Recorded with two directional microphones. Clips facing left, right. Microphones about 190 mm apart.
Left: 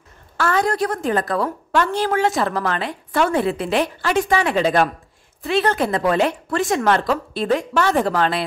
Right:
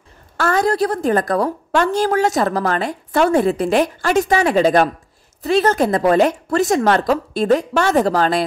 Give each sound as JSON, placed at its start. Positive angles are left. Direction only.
{"t": 0.4, "sound": "a woman's voice", "side_deg": -40}